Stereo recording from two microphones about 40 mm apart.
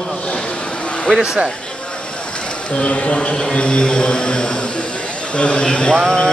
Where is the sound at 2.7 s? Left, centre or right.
Left.